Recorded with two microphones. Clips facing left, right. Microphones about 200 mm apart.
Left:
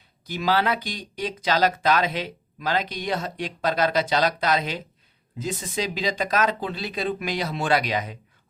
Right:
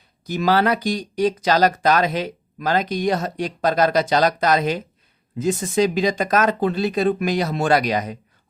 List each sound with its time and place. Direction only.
0.3 s speech: 45° right (ahead or behind)